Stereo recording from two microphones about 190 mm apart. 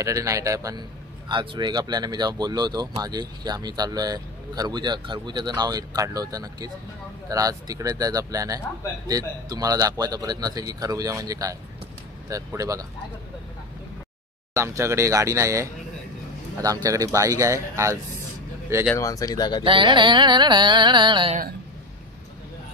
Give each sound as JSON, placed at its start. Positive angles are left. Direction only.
{"t": 0.0, "sound": "speech", "side_deg": -15}
{"t": 14.5, "sound": "speech", "side_deg": -15}
{"t": 18.9, "sound": "speech", "side_deg": 15}
{"t": 19.6, "sound": "speech", "side_deg": -25}